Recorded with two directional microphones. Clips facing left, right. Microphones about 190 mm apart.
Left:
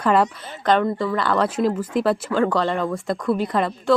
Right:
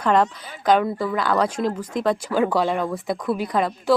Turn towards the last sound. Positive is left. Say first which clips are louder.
# left 1 dB
turn(degrees=0)  # may be behind; listen again after turning